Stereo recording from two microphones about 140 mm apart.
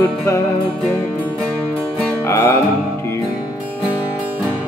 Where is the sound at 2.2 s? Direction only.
20° left (ahead or behind).